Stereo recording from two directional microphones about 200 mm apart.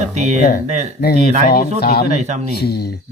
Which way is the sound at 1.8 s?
50° left (ahead or behind).